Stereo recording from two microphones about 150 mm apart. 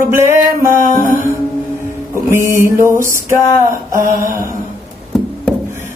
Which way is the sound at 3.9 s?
20° right (ahead or behind).